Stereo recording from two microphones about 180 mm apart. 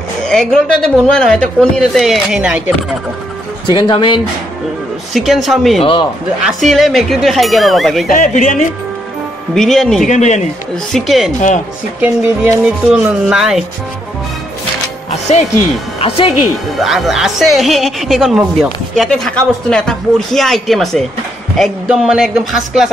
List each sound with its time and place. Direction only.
0.3 s a woman's voice: 5° left (ahead or behind)
3.6 s speech: 25° left (ahead or behind)
5.1 s a woman's voice: centre (ahead or behind)
5.8 s speech: 30° left (ahead or behind)
6.4 s a woman's voice: centre (ahead or behind)
8.1 s speech: 45° left (ahead or behind)
9.6 s a woman's voice: centre (ahead or behind)
10.0 s a man's voice: 40° left (ahead or behind)
10.9 s a woman's voice: centre (ahead or behind)
12.6 s a woman's voice: 5° right (ahead or behind)
15.0 s music: 35° left (ahead or behind)
16.0 s a man's voice: 35° left (ahead or behind)
16.7 s a woman's voice: centre (ahead or behind)